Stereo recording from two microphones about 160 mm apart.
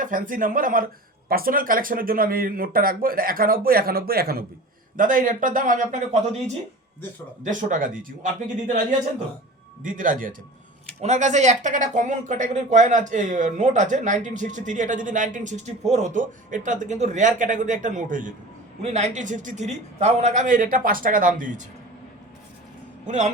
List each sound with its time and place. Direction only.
0.0 s speech: 55° right (ahead or behind)
4.9 s speech: 55° right (ahead or behind)
7.4 s speech: 55° right (ahead or behind)
9.8 s speech: 55° right (ahead or behind)
11.0 s speech: 45° right (ahead or behind)
18.8 s speech: 45° right (ahead or behind)
23.0 s speech: 50° right (ahead or behind)